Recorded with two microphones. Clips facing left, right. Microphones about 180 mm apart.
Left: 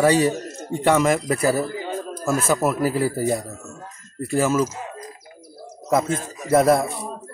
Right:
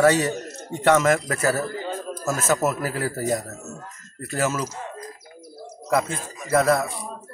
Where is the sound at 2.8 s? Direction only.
10° left (ahead or behind).